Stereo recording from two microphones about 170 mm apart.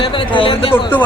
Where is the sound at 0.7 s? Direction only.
10° left (ahead or behind).